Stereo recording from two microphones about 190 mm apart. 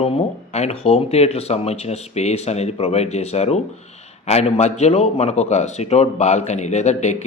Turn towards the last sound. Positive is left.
turn(degrees=35)  # may be behind; listen again after turning